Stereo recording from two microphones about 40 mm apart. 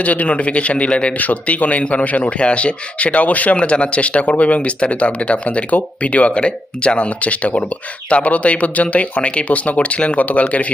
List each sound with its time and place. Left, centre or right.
0.0 s speech: left
1.2 s a man's voice: left
2.0 s speech: left